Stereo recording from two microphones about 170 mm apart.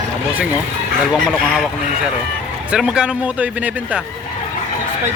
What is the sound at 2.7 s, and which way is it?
A man's voice, 5° right (ahead or behind).